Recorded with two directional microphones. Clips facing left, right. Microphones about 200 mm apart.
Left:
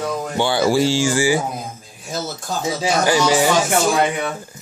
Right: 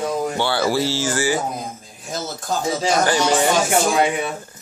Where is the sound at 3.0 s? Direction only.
5° left (ahead or behind).